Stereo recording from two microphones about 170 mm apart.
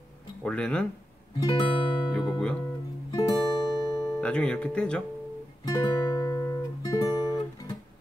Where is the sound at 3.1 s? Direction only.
20° left (ahead or behind).